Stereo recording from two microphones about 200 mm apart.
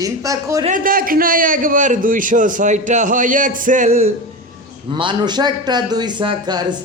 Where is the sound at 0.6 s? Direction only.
45° right (ahead or behind).